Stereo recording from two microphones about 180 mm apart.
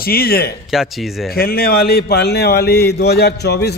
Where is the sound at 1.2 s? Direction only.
60° left (ahead or behind).